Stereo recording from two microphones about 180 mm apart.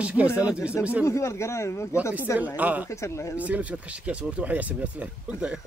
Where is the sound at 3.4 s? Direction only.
10° right (ahead or behind).